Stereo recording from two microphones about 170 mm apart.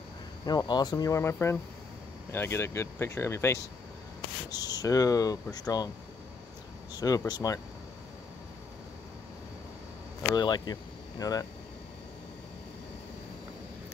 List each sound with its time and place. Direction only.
0.5 s speech: 25° left (ahead or behind)
7.0 s speech: 20° left (ahead or behind)
10.3 s speech: 25° left (ahead or behind)